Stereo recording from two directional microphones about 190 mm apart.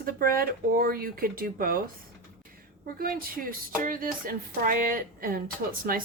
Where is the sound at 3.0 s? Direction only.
50° right (ahead or behind).